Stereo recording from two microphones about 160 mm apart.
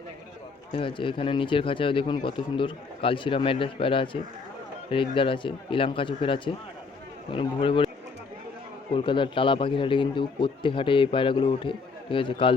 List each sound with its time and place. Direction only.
0.7 s a man's voice: 35° left (ahead or behind)
9.0 s a man's voice: 30° left (ahead or behind)